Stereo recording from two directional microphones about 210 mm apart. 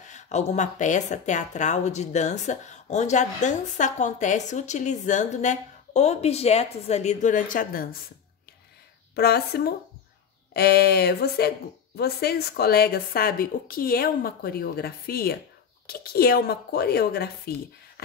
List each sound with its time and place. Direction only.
0.0 s speech: 35° left (ahead or behind)
9.1 s a woman's voice: 50° left (ahead or behind)